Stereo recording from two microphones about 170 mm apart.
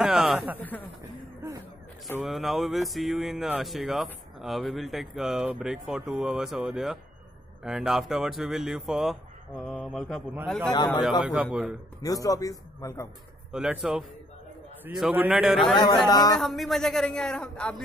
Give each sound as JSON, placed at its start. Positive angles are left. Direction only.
{"t": 0.0, "sound": "a sound", "side_deg": -5}
{"t": 0.6, "sound": "speech", "side_deg": 10}
{"t": 2.2, "sound": "speech", "side_deg": 0}
{"t": 10.7, "sound": "a man's voice", "side_deg": 25}
{"t": 11.0, "sound": "speech", "side_deg": 0}
{"t": 12.0, "sound": "a man's voice", "side_deg": 20}
{"t": 13.5, "sound": "speech", "side_deg": -5}
{"t": 16.1, "sound": "a man's voice", "side_deg": 25}
{"t": 16.3, "sound": "speech", "side_deg": 0}